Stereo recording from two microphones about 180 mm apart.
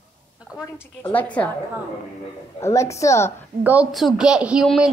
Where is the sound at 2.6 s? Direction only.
15° left (ahead or behind).